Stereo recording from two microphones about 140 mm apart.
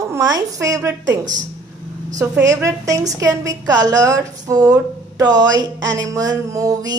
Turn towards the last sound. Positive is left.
turn(degrees=-25)  # may be behind; listen again after turning